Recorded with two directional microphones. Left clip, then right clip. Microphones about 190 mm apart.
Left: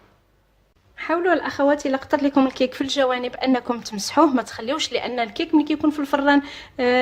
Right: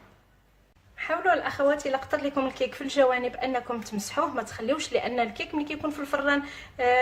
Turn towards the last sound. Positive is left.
turn(degrees=55)  # may be behind; listen again after turning